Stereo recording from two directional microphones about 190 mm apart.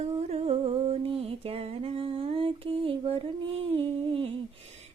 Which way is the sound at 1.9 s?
30° right (ahead or behind).